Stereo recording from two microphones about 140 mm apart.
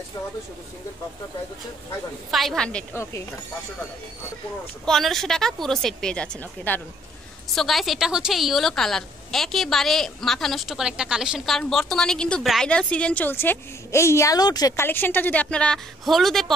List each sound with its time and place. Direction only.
2.3 s a woman's voice: 5° left (ahead or behind)
2.9 s a woman's voice: 20° left (ahead or behind)
4.8 s a woman's voice: centre (ahead or behind); by 14.7 s 30° left (ahead or behind)
14.8 s a woman's voice: 15° left (ahead or behind)